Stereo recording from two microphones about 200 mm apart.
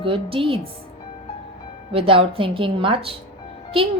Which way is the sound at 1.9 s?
25° right (ahead or behind).